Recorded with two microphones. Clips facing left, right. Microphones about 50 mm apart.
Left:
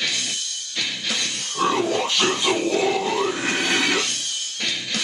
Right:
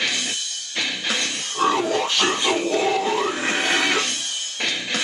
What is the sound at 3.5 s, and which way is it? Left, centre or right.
Music, right.